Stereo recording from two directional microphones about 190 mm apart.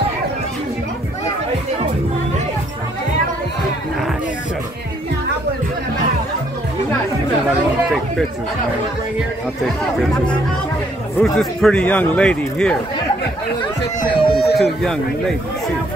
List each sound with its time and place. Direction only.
11.1 s a man's voice: centre (ahead or behind)
14.0 s a sound: 30° left (ahead or behind)
14.6 s a man's voice: centre (ahead or behind)